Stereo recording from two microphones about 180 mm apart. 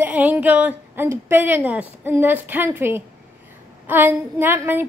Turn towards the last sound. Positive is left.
turn(degrees=-10)  # may be behind; listen again after turning